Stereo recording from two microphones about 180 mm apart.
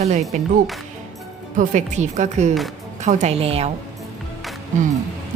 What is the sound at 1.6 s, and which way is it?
A woman's voice, 40° right (ahead or behind).